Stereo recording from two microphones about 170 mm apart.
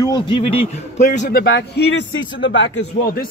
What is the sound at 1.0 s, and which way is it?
Speech, 45° left (ahead or behind).